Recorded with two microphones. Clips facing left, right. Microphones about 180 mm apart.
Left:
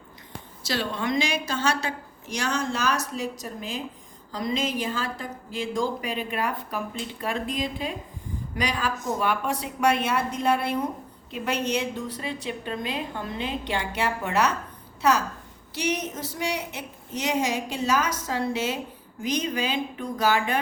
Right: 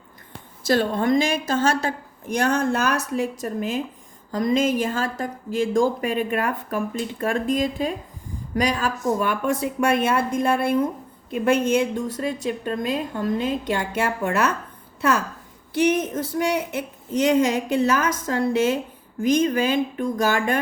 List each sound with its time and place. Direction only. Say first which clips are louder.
0.7 s a woman's voice: right 8 dB; 50° right (ahead or behind)
15.7 s a woman's voice: right 8 dB; 50° right (ahead or behind)